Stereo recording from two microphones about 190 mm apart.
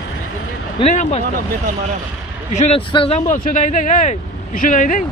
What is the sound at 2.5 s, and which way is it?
Speech, 35° left (ahead or behind).